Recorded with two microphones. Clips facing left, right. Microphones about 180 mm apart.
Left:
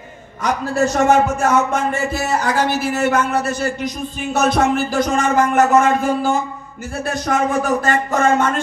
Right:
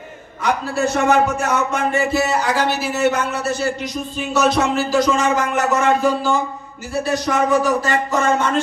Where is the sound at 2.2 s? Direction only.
60° right (ahead or behind).